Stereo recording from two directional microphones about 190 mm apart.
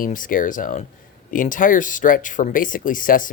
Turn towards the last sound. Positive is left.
turn(degrees=45)  # may be behind; listen again after turning